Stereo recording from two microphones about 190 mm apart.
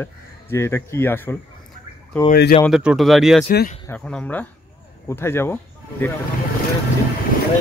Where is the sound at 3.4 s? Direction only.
50° left (ahead or behind).